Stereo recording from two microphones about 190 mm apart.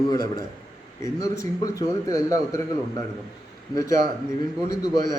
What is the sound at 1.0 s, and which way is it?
A man's voice, 15° left (ahead or behind).